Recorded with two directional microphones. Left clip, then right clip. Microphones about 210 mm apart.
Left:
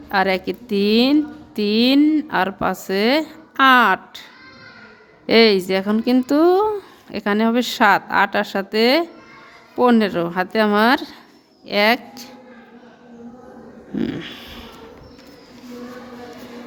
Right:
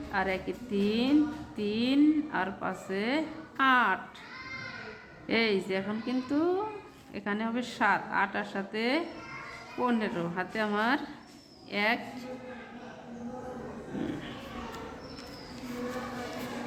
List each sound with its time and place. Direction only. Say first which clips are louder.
0.1 s a woman's voice: left 13 dB; 55° left (ahead or behind)
5.2 s a woman's voice: left 15 dB; 60° left (ahead or behind)
14.0 s a sound: left 12 dB; 55° left (ahead or behind)